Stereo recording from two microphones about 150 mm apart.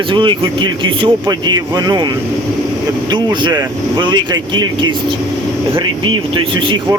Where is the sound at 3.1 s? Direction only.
30° right (ahead or behind).